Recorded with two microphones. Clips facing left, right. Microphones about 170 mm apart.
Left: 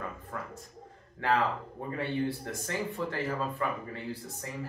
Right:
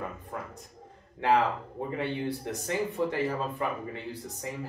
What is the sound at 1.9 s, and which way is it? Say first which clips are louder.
Speech: even; 20° right (ahead or behind).